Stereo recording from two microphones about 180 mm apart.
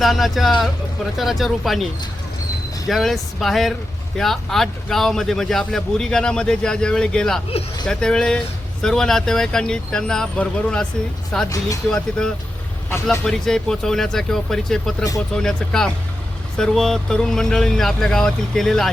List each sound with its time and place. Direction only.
0.0 s a man's voice: centre (ahead or behind)
11.4 s speech: 20° left (ahead or behind)
11.9 s a man's voice: 5° left (ahead or behind)